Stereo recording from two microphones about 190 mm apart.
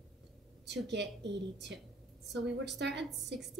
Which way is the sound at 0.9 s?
65° right (ahead or behind).